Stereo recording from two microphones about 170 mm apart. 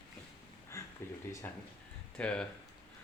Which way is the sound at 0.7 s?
15° left (ahead or behind).